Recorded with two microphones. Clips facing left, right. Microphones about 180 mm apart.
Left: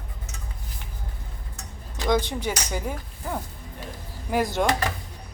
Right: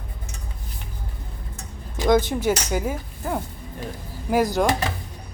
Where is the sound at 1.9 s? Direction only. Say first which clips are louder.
Right 5 dB; 20° right (ahead or behind).